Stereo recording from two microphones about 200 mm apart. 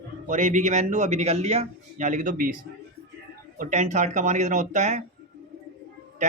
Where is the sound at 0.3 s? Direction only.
40° right (ahead or behind).